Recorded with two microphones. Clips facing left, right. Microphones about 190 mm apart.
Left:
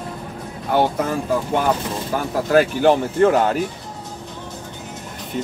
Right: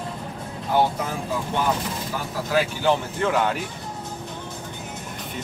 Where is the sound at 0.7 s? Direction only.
60° left (ahead or behind); by 3.6 s 40° left (ahead or behind).